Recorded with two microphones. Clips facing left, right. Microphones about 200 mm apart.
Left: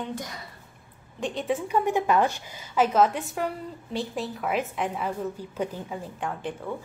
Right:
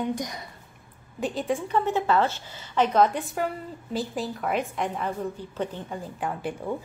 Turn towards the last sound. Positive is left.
turn(degrees=-10)  # may be behind; listen again after turning